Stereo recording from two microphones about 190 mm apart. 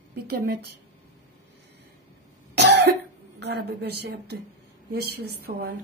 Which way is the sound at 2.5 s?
60° right (ahead or behind).